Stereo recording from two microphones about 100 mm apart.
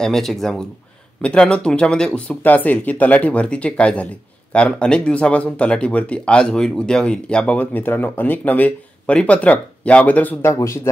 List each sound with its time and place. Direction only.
0.0 s speech: 5° left (ahead or behind)
10.4 s speech: 30° left (ahead or behind)